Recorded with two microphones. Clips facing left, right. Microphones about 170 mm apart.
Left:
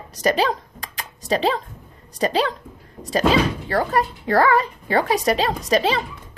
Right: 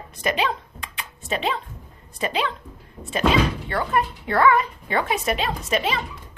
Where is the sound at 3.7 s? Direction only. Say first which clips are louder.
Left 3 dB; 40° left (ahead or behind).